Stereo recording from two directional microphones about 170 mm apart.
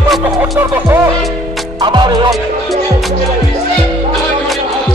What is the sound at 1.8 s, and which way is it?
Music, 25° right (ahead or behind).